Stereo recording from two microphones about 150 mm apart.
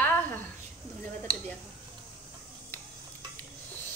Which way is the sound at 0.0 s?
10° left (ahead or behind).